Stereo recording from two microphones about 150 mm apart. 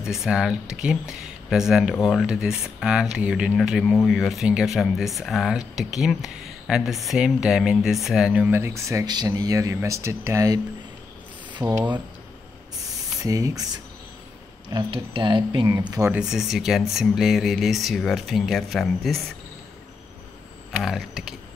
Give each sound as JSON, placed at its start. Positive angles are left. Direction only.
{"t": 0.0, "sound": "speech", "side_deg": -5}
{"t": 11.6, "sound": "speech", "side_deg": -15}
{"t": 13.2, "sound": "speech", "side_deg": -20}
{"t": 14.7, "sound": "speech", "side_deg": -35}
{"t": 16.1, "sound": "speech", "side_deg": -5}
{"t": 20.7, "sound": "speech", "side_deg": 0}